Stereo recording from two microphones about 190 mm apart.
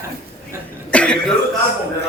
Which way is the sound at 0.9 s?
5° left (ahead or behind).